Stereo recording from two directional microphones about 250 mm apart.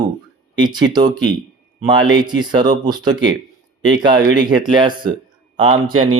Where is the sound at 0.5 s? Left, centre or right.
Centre.